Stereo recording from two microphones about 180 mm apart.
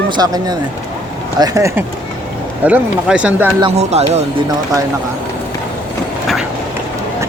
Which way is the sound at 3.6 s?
35° right (ahead or behind).